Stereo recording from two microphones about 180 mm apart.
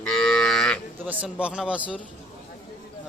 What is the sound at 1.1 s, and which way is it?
Speech, 5° right (ahead or behind).